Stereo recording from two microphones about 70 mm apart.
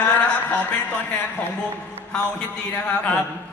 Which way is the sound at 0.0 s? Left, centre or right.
Centre.